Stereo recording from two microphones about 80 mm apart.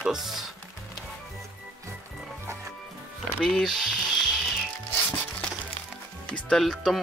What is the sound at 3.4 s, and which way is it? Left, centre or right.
Speech, centre.